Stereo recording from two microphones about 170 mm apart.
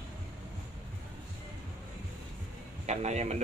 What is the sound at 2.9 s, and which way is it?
Speech, 40° right (ahead or behind).